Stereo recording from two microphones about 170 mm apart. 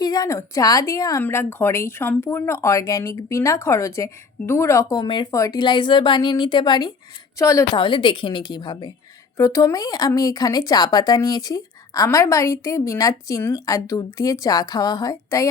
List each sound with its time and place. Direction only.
0.0 s a woman's voice: 20° left (ahead or behind)
7.8 s speech: 30° left (ahead or behind)